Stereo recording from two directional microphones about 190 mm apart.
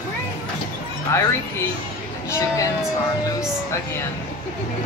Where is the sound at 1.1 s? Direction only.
15° left (ahead or behind).